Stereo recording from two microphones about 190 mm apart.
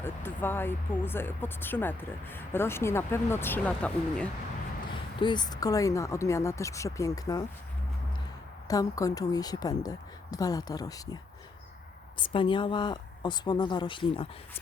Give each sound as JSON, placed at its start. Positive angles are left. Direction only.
{"t": 0.0, "sound": "speech", "side_deg": 10}
{"t": 5.2, "sound": "speech", "side_deg": 25}
{"t": 8.6, "sound": "speech", "side_deg": 20}
{"t": 12.2, "sound": "speech", "side_deg": 25}